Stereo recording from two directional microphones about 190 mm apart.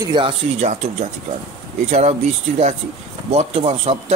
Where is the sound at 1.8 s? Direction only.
35° right (ahead or behind).